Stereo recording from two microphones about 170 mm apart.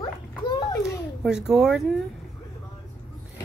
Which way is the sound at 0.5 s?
20° left (ahead or behind).